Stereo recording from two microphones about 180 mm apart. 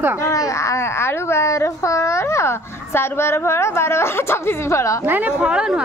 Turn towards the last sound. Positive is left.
turn(degrees=-5)  # may be behind; listen again after turning